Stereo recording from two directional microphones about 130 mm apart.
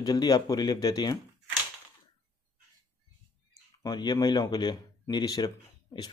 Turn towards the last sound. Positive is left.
turn(degrees=30)  # may be behind; listen again after turning